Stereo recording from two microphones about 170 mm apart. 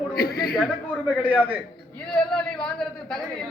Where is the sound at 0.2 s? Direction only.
65° left (ahead or behind).